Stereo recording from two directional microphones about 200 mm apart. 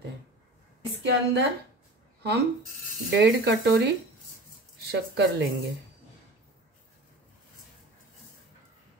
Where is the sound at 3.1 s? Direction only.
65° right (ahead or behind).